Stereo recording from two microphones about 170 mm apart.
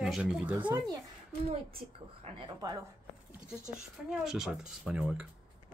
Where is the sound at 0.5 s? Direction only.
15° right (ahead or behind).